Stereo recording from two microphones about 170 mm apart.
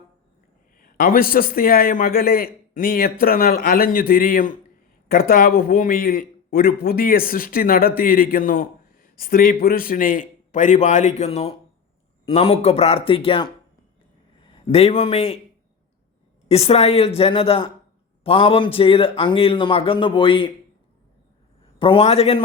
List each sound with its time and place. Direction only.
0.8 s a man's voice: 55° left (ahead or behind); by 15.4 s 35° left (ahead or behind)
16.5 s a man's voice: 35° left (ahead or behind)
21.8 s a man's voice: 35° left (ahead or behind)